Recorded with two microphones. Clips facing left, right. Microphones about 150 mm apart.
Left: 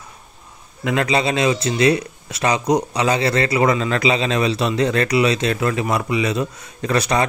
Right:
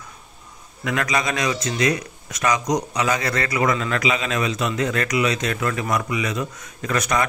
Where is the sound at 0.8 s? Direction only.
30° left (ahead or behind).